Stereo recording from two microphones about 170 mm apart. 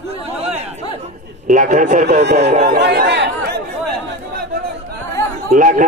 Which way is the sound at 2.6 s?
70° right (ahead or behind).